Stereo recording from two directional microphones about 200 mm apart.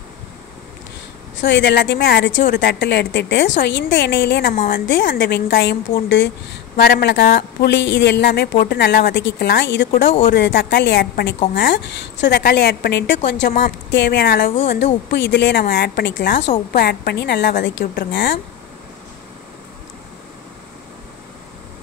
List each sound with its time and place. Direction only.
1.3 s a woman's voice: 65° left (ahead or behind)
17.6 s a woman's voice: 60° left (ahead or behind)